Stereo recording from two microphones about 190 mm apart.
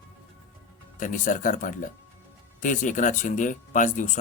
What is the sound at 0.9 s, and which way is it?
A man's voice, 40° left (ahead or behind).